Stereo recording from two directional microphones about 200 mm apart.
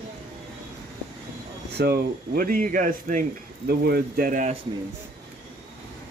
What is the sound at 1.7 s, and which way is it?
Speech, 50° right (ahead or behind).